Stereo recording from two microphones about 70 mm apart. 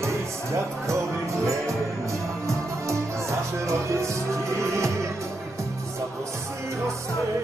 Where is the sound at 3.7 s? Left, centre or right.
Right.